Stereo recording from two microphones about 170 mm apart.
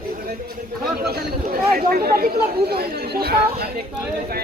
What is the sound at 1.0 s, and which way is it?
Speech, 65° right (ahead or behind).